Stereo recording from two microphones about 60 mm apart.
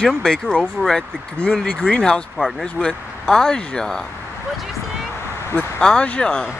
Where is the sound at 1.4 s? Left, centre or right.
Centre.